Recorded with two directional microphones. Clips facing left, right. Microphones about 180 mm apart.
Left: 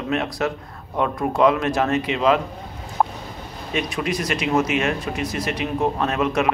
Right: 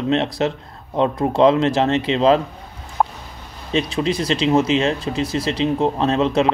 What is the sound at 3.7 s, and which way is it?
Speech, 30° right (ahead or behind).